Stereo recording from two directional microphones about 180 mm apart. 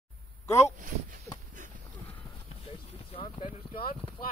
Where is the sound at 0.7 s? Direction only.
45° right (ahead or behind).